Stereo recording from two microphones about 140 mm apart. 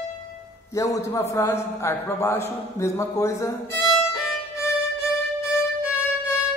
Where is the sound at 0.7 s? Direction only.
25° left (ahead or behind).